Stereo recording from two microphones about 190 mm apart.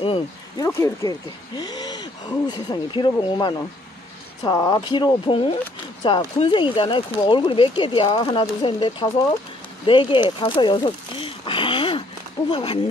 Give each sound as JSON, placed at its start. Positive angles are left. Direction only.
{"t": 0.0, "sound": "speech", "side_deg": 30}
{"t": 0.7, "sound": "speech", "side_deg": 15}
{"t": 11.4, "sound": "a sound", "side_deg": 25}
{"t": 12.4, "sound": "speech", "side_deg": 25}